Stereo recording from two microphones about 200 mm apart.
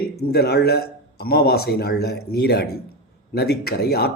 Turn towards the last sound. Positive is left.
turn(degrees=50)  # may be behind; listen again after turning